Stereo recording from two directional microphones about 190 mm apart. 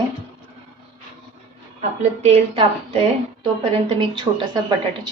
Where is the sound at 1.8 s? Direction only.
30° right (ahead or behind).